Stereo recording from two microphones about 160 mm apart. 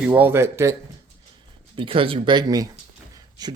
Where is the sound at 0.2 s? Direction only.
15° right (ahead or behind).